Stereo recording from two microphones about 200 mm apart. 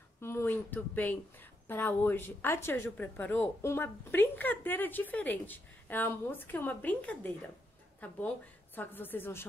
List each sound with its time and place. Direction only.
0.2 s speech: 10° left (ahead or behind)